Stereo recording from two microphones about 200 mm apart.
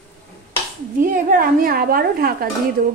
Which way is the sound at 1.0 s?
45° right (ahead or behind).